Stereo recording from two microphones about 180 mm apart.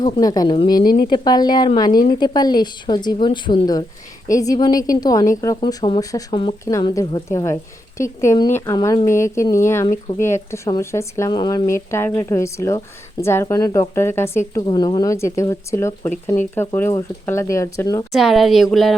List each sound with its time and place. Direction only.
0.0 s speech: 20° left (ahead or behind)
0.8 s a woman's voice: 55° left (ahead or behind)
1.1 s speech: 20° left (ahead or behind)
14.7 s speech: 25° left (ahead or behind)
18.1 s speech: centre (ahead or behind)